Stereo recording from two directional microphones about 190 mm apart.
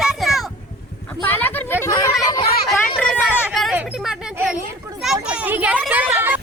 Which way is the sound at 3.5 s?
Centre (ahead or behind).